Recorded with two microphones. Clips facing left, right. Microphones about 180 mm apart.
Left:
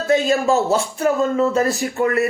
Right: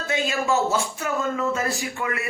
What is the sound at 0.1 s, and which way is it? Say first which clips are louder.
Speech: left 7 dB; 35° left (ahead or behind).